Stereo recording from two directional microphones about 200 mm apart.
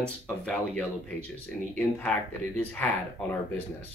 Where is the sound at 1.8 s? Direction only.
5° left (ahead or behind).